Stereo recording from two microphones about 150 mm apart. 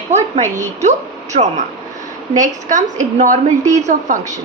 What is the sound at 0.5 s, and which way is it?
A woman's voice, 50° right (ahead or behind).